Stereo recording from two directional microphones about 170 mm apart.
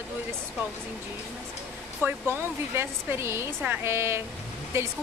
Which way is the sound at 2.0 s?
10° right (ahead or behind).